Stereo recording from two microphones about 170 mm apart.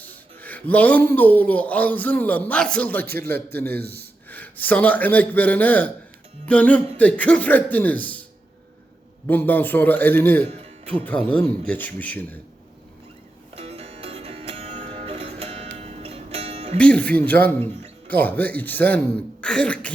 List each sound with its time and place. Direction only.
0.0 s a man's voice: 10° left (ahead or behind)
9.2 s speech: 10° left (ahead or behind)
13.6 s music: 35° right (ahead or behind)
16.7 s speech: 5° left (ahead or behind)